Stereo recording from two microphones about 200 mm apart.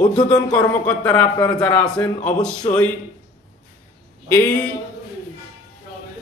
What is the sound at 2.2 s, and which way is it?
Speech, 35° left (ahead or behind).